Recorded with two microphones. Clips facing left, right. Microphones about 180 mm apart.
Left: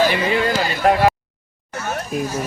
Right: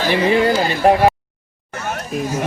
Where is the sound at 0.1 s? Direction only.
25° right (ahead or behind).